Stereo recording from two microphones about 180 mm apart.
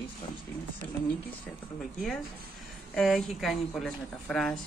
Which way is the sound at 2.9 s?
Centre (ahead or behind).